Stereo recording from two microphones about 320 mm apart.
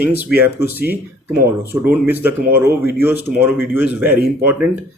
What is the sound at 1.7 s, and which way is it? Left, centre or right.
Speech, centre.